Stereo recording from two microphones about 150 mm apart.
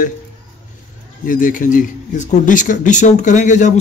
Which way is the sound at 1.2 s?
65° left (ahead or behind).